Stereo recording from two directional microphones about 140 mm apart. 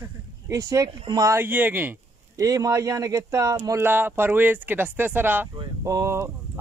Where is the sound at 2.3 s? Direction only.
25° right (ahead or behind).